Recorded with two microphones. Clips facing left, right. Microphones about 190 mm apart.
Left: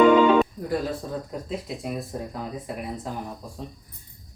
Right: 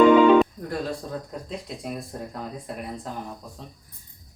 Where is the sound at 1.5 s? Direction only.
Centre (ahead or behind).